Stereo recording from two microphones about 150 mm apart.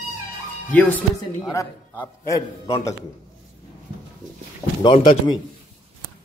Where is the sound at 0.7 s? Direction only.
10° left (ahead or behind).